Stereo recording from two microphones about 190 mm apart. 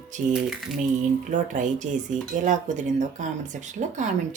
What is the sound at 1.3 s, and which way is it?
Speech, 40° right (ahead or behind).